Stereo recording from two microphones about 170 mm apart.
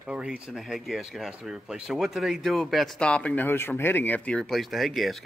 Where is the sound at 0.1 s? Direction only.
5° right (ahead or behind).